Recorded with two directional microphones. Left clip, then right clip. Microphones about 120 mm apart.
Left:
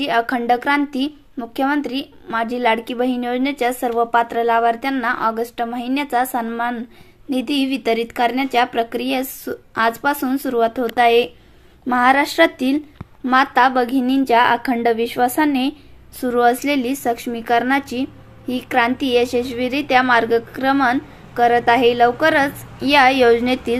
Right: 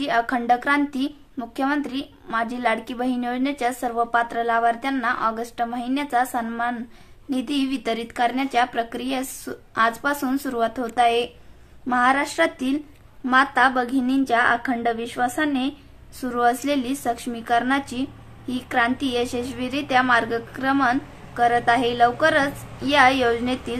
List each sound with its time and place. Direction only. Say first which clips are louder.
0.0 s a woman's voice: left 4 dB; 20° left (ahead or behind)
22.8 s a woman's voice: left 4 dB; 40° left (ahead or behind)